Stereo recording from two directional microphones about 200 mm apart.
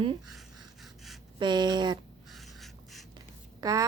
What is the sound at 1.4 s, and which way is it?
Speech, 20° right (ahead or behind).